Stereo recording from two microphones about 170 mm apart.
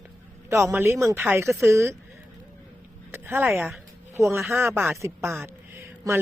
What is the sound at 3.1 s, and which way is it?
Speech, 15° right (ahead or behind).